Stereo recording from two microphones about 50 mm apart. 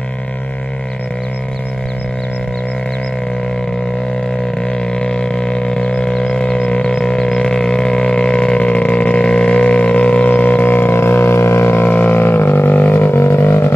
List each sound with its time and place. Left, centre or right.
4.9 s a sound: centre
6.3 s music: centre; by 13.1 s left
13.1 s music: left